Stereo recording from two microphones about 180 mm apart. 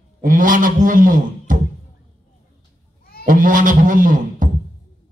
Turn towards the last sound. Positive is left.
turn(degrees=-45)  # may be behind; listen again after turning